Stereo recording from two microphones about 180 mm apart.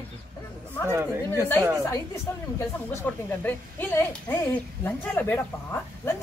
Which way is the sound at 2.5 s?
10° left (ahead or behind).